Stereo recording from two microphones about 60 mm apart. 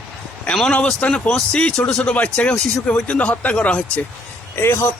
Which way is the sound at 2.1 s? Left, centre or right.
Left.